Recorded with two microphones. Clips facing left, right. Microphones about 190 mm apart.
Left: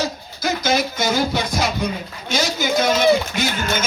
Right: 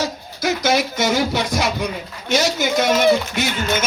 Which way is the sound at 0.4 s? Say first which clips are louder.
Right 2 dB; 75° right (ahead or behind).